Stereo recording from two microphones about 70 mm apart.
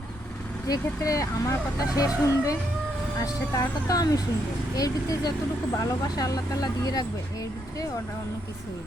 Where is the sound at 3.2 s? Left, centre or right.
Left.